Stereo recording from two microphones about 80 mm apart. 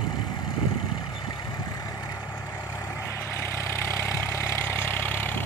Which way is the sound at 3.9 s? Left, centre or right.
Left.